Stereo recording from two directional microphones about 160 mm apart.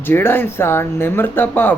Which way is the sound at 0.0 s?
15° left (ahead or behind).